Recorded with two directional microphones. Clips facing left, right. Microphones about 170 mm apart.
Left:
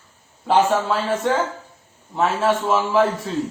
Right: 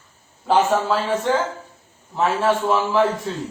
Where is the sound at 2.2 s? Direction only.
Centre (ahead or behind).